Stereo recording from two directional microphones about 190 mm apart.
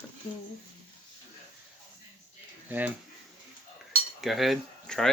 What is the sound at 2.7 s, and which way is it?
Speech, 10° right (ahead or behind).